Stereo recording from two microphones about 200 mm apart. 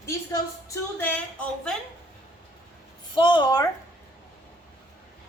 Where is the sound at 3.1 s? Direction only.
25° left (ahead or behind).